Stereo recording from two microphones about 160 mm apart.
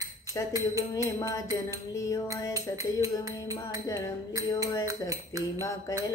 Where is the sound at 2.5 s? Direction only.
20° right (ahead or behind).